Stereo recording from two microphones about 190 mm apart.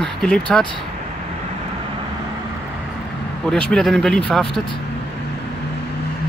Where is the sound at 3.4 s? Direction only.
5° left (ahead or behind).